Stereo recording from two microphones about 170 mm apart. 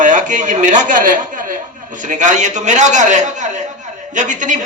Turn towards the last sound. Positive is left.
turn(degrees=-45)  # may be behind; listen again after turning